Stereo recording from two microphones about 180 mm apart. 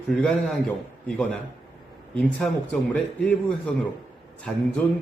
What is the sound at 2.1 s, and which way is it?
Speech, 5° left (ahead or behind).